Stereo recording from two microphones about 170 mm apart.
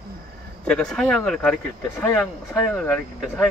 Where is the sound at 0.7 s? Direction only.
5° left (ahead or behind).